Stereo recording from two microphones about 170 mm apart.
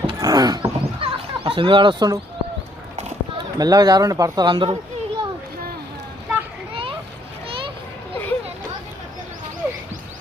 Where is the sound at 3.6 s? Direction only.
25° right (ahead or behind).